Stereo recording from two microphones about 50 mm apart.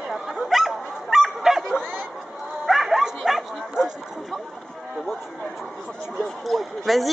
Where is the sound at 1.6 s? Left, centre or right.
Centre.